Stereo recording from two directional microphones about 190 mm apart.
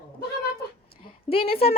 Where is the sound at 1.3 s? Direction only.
30° left (ahead or behind).